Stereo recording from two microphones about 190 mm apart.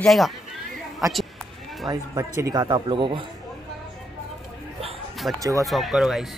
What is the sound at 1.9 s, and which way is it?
Speech, 20° right (ahead or behind).